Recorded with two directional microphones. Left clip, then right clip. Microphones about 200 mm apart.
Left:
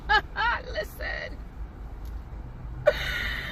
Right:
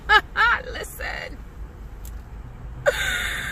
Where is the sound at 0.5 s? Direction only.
20° right (ahead or behind).